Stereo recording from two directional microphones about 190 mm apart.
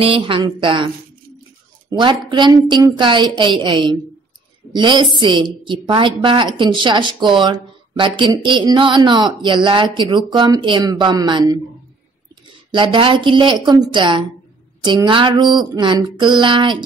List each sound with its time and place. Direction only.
0.0 s speech: 25° right (ahead or behind)
1.9 s speech: 25° right (ahead or behind)
12.7 s speech: 25° right (ahead or behind)